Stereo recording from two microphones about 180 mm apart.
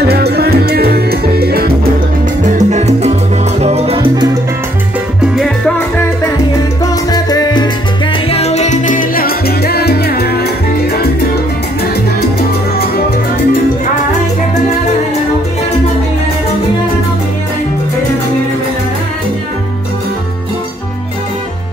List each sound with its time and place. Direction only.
0.1 s music: 60° right (ahead or behind)
2.5 s music: 40° right (ahead or behind)
3.6 s salsa music: 35° right (ahead or behind)
6.8 s salsa music: 20° left (ahead or behind)
8.3 s salsa music: 35° left (ahead or behind); by 11.1 s 60° left (ahead or behind)
12.2 s salsa music: 60° left (ahead or behind)